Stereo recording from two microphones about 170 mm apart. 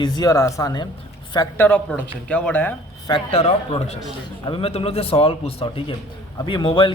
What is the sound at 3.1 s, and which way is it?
A man's voice, 35° left (ahead or behind).